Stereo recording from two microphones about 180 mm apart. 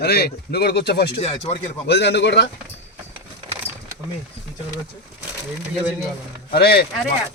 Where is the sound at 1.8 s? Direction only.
70° left (ahead or behind).